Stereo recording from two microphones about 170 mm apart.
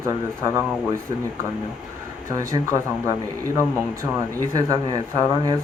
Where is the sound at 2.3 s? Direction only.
20° right (ahead or behind).